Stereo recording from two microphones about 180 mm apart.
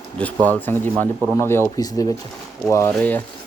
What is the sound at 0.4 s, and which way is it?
Speech, 10° left (ahead or behind).